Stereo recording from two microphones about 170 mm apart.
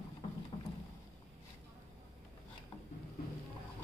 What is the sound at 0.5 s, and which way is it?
Boat, 40° left (ahead or behind).